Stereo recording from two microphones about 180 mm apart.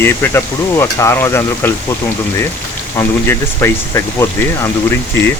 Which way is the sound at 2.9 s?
15° left (ahead or behind).